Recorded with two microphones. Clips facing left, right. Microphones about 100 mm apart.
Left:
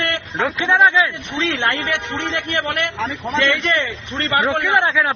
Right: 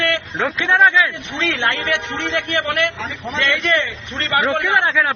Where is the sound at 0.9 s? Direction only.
20° left (ahead or behind).